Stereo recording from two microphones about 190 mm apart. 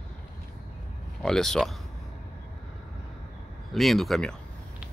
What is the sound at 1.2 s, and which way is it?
Speech, centre (ahead or behind).